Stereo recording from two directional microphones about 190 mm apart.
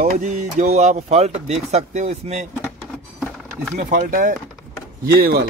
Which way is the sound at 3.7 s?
45° right (ahead or behind).